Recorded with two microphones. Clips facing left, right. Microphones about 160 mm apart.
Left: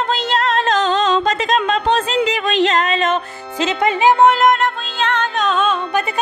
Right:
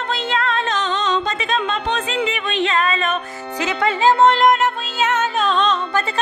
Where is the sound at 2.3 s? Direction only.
90° left.